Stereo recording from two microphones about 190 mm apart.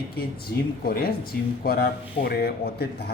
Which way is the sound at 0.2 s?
55° left (ahead or behind).